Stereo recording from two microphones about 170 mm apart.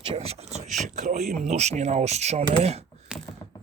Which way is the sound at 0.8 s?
45° right (ahead or behind).